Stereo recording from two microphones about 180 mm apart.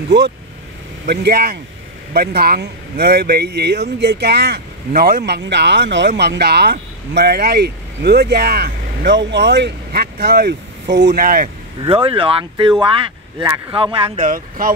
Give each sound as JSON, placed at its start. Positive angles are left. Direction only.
{"t": 1.0, "sound": "speech", "side_deg": -65}
{"t": 9.0, "sound": "speech", "side_deg": -75}
{"t": 11.8, "sound": "speech", "side_deg": -30}
{"t": 14.2, "sound": "speech", "side_deg": -50}